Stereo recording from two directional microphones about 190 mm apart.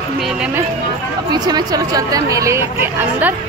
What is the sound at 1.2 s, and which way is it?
Speech, 20° right (ahead or behind).